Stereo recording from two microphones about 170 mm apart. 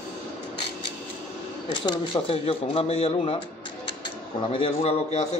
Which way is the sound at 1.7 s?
25° left (ahead or behind).